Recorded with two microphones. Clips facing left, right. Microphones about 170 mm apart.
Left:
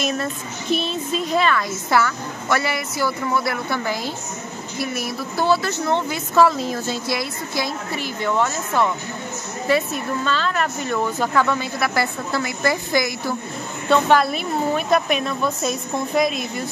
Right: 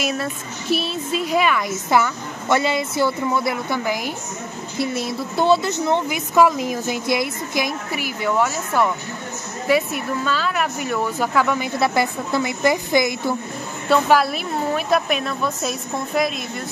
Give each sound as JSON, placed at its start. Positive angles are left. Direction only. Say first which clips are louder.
{"t": 0.0, "sound": "a woman's voice", "louder": "even", "side_deg": -5}
{"t": 13.8, "sound": "a woman's voice", "louder": "even", "side_deg": -5}